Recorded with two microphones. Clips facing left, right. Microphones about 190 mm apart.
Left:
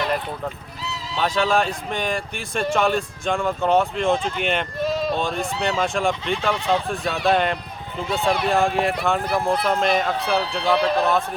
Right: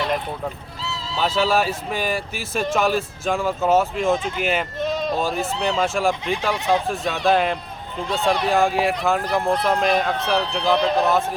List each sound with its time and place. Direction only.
0.8 s neigh: 15° left (ahead or behind)
1.4 s speech: 5° right (ahead or behind)